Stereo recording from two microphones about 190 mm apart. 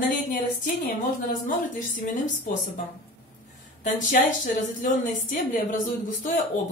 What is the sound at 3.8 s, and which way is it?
A woman's voice, 40° left (ahead or behind).